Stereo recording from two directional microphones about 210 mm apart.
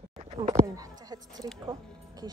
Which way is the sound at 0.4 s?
20° right (ahead or behind).